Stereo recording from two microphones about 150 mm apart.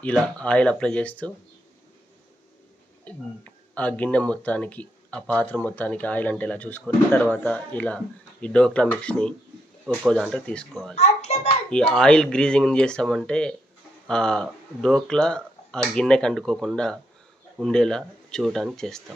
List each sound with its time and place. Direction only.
0.4 s speech: 5° left (ahead or behind)
3.0 s speech: 10° left (ahead or behind)
9.8 s speech: 5° right (ahead or behind)
10.9 s a sound: 45° left (ahead or behind)
11.7 s speech: 5° left (ahead or behind)